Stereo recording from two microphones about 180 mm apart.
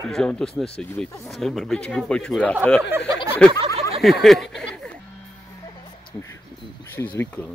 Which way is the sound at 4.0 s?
Centre (ahead or behind).